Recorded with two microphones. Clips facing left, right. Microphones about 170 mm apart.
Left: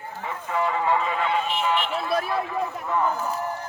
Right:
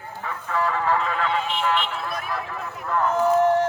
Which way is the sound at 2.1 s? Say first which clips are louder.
Left 7 dB; 30° left (ahead or behind).